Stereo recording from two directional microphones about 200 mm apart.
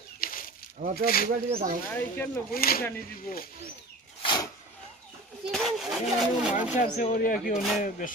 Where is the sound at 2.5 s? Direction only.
50° left (ahead or behind).